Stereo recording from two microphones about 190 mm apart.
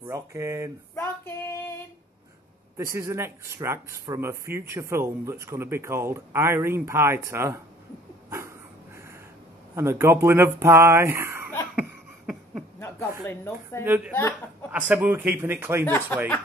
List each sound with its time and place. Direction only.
0.0 s speech: 15° right (ahead or behind)
0.9 s female singing: 10° left (ahead or behind)
2.8 s speech: 15° right (ahead or behind)
8.3 s dog: 15° right (ahead or behind)
9.8 s speech: 15° right (ahead or behind)
13.3 s a woman's voice: 15° left (ahead or behind)
13.8 s speech: 10° right (ahead or behind)
15.8 s a woman's voice: 10° left (ahead or behind)